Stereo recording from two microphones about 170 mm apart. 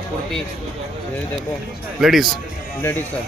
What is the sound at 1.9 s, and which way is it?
Speech, centre (ahead or behind).